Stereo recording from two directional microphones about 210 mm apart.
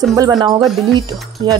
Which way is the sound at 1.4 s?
20° right (ahead or behind).